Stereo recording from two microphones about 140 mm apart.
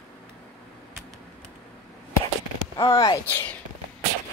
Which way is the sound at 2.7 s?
25° left (ahead or behind).